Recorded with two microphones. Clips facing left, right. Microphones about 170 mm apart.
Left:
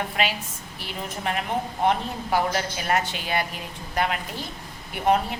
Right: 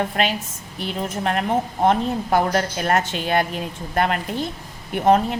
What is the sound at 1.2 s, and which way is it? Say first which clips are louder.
A woman's voice: right 5 dB; 45° right (ahead or behind).